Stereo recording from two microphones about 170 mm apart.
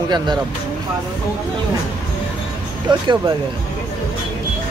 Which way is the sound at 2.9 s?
25° right (ahead or behind).